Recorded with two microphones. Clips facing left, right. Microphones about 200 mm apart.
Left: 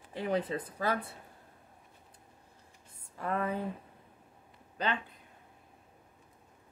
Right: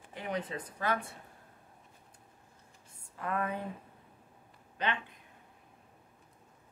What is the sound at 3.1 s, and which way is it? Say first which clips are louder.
Speech: left 1 dB; 35° left (ahead or behind).